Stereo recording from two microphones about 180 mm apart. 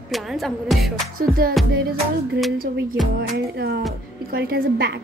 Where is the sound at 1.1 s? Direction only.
55° right (ahead or behind).